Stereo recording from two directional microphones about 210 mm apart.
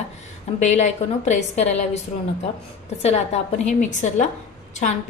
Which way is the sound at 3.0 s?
30° left (ahead or behind).